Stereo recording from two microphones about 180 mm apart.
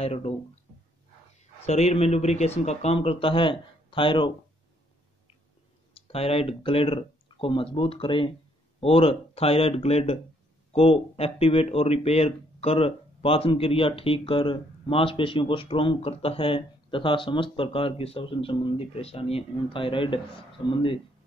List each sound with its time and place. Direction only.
0.0 s speech: 35° left (ahead or behind)
1.7 s speech: 35° left (ahead or behind)
5.9 s speech: 30° left (ahead or behind)